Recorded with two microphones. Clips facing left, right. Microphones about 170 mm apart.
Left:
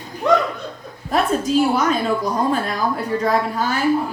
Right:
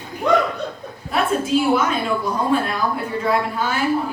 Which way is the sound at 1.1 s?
40° left (ahead or behind).